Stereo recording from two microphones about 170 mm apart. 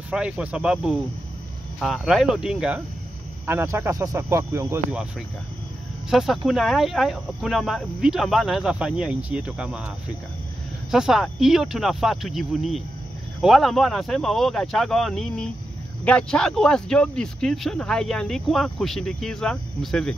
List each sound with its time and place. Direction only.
0.1 s speech: 5° right (ahead or behind)
6.0 s speech: centre (ahead or behind)
10.9 s speech: 5° right (ahead or behind)